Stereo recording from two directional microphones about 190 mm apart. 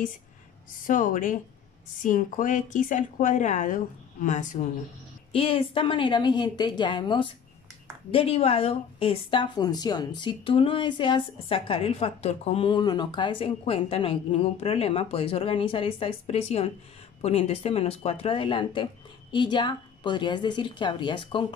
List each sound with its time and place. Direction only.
0.8 s speech: 45° left (ahead or behind)
5.3 s speech: 30° left (ahead or behind)